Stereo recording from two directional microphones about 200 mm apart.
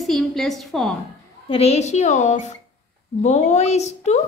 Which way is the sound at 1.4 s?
30° left (ahead or behind).